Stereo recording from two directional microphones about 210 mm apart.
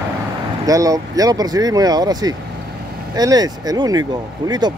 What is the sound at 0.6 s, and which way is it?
Speech, 15° right (ahead or behind).